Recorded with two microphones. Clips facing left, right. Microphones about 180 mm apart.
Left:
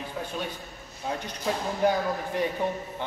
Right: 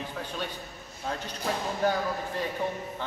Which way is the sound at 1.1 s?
10° left (ahead or behind).